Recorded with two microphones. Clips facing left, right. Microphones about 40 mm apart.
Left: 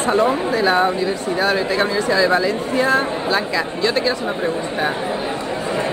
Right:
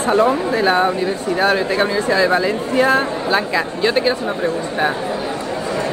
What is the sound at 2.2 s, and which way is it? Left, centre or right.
Speech, centre.